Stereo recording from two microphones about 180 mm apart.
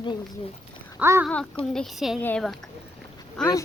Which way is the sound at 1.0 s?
10° right (ahead or behind).